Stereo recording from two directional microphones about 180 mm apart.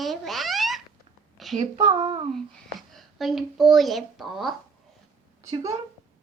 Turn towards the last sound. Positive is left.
turn(degrees=-20)  # may be behind; listen again after turning